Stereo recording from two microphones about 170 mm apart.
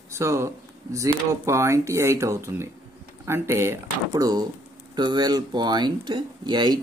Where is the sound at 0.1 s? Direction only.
15° right (ahead or behind).